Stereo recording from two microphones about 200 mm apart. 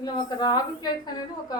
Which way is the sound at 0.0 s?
20° left (ahead or behind).